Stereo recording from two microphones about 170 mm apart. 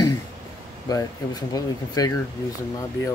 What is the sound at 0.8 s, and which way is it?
Speech, 20° left (ahead or behind).